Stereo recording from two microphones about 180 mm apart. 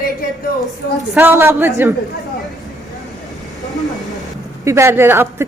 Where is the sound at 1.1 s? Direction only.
15° right (ahead or behind).